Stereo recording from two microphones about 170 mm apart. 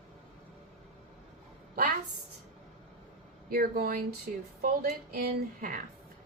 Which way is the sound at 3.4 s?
65° right (ahead or behind).